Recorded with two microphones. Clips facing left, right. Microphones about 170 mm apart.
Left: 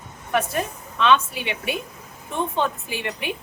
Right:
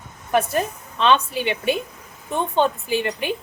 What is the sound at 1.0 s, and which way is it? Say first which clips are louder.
Speech: right 1 dB; 30° right (ahead or behind).